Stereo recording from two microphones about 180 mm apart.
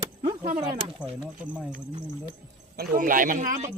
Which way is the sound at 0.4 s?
35° right (ahead or behind).